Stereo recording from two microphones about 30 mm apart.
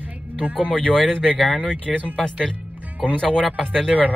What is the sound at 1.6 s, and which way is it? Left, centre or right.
Speech, right.